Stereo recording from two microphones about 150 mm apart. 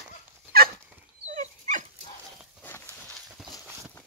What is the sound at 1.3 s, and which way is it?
Dog, 55° right (ahead or behind).